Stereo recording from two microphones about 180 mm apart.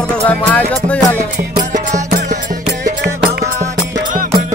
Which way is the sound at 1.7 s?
40° right (ahead or behind).